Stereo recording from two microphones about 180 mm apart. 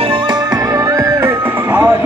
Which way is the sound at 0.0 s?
25° right (ahead or behind).